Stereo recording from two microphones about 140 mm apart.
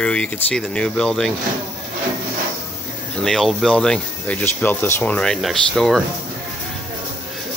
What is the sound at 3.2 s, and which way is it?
Speech, centre (ahead or behind).